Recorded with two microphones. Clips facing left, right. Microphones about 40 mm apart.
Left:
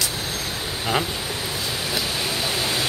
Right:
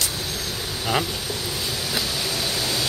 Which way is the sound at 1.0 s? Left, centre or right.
Left.